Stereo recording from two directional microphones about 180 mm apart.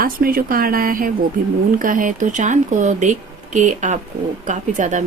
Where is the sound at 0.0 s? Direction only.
55° right (ahead or behind).